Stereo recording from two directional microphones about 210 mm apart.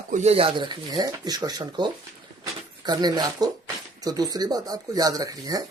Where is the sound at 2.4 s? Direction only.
20° right (ahead or behind).